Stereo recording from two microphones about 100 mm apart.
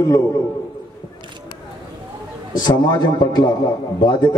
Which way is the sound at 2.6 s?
45° left (ahead or behind).